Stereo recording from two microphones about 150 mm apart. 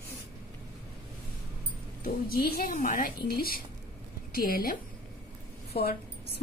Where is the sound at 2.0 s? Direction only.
80° left.